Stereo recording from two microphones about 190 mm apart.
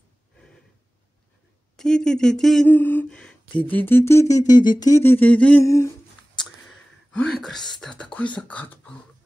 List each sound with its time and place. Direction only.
1.8 s speech: 5° left (ahead or behind)
7.1 s speech: 5° left (ahead or behind)